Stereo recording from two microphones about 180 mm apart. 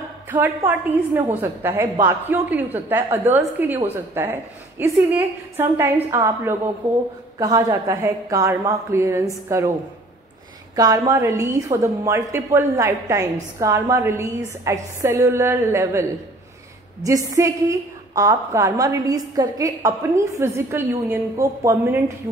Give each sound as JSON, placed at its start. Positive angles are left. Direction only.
{"t": 0.3, "sound": "a woman's voice", "side_deg": -10}
{"t": 10.8, "sound": "a woman's voice", "side_deg": -20}